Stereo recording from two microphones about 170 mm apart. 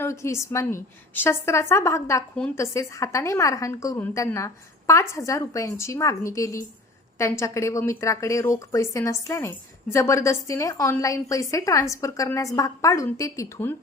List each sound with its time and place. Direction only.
0.0 s speech: 15° left (ahead or behind)